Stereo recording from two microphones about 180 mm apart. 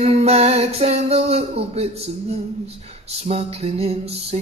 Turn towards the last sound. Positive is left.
turn(degrees=-35)  # may be behind; listen again after turning